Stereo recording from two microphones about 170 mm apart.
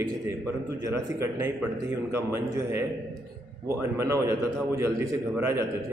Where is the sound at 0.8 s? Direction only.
15° right (ahead or behind).